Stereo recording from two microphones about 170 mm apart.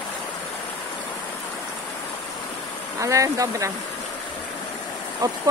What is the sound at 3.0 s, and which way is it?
Speech, 20° right (ahead or behind).